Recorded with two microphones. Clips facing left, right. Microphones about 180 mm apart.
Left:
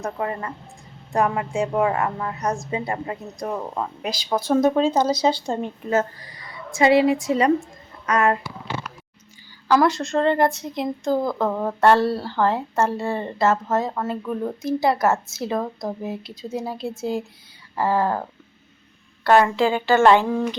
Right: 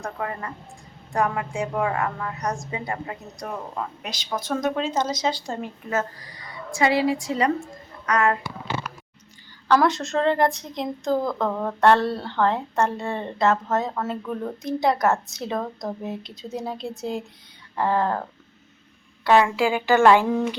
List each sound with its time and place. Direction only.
0.0 s a woman's voice: 30° left (ahead or behind)
9.6 s a woman's voice: centre (ahead or behind)
19.5 s speech: 10° right (ahead or behind)